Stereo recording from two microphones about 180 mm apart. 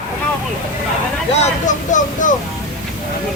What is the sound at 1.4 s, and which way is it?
Speech, 45° left (ahead or behind).